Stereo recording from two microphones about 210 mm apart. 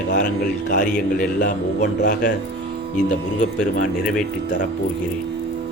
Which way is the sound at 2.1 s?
40° left (ahead or behind).